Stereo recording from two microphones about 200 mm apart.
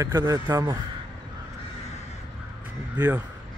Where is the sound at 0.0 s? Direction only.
15° right (ahead or behind).